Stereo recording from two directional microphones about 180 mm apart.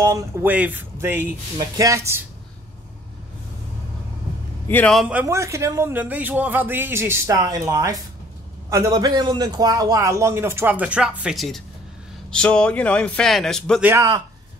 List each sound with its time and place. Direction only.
0.0 s a man's voice: 15° right (ahead or behind)
4.6 s a man's voice: 5° left (ahead or behind)
5.0 s a man's voice: 10° right (ahead or behind)
13.8 s a man's voice: 20° right (ahead or behind)